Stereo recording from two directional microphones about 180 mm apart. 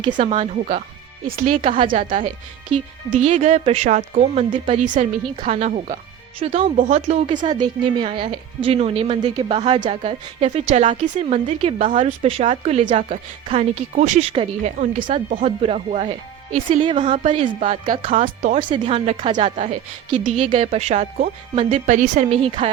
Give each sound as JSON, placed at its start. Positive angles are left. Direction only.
{"t": 0.0, "sound": "speech", "side_deg": -30}
{"t": 6.7, "sound": "a woman's voice", "side_deg": -45}
{"t": 18.1, "sound": "speech", "side_deg": -45}
{"t": 18.7, "sound": "a woman's voice", "side_deg": -30}
{"t": 19.5, "sound": "speech", "side_deg": -40}